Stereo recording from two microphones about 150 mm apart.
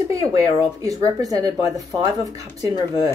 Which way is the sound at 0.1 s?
20° right (ahead or behind).